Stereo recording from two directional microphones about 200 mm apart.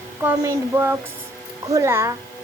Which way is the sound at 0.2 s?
15° right (ahead or behind).